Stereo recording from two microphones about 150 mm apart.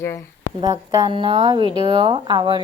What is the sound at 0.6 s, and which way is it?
Speech, 25° right (ahead or behind).